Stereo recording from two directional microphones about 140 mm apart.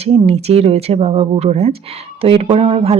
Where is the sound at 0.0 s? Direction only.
45° right (ahead or behind).